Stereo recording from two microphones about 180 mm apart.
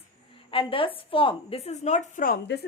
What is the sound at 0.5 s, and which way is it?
A woman's voice, 30° left (ahead or behind).